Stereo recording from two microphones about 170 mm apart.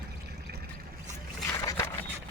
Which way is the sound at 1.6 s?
15° left (ahead or behind).